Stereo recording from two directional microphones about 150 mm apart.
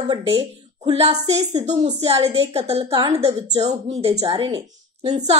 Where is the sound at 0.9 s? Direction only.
45° right (ahead or behind).